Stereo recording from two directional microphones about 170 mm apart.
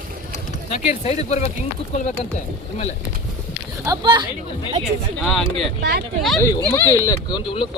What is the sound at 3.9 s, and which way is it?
Speech, 25° right (ahead or behind).